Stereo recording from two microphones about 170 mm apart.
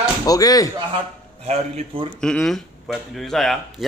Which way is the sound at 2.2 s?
5° left (ahead or behind).